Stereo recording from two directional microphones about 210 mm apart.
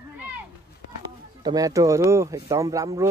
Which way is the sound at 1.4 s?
15° right (ahead or behind).